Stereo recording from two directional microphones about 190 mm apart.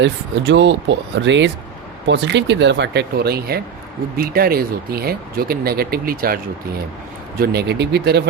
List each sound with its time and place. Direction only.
0.0 s speech: 70° right (ahead or behind)